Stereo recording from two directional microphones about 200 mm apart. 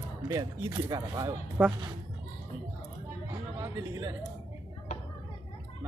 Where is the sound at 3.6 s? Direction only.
15° right (ahead or behind).